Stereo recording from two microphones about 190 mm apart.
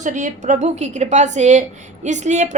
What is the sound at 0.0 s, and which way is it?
A woman's voice, 40° right (ahead or behind).